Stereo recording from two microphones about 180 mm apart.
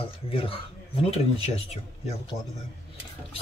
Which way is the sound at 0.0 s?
30° left (ahead or behind).